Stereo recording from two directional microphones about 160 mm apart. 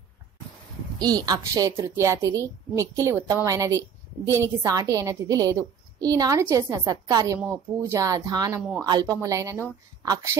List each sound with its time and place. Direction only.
0.9 s a woman's voice: 25° right (ahead or behind)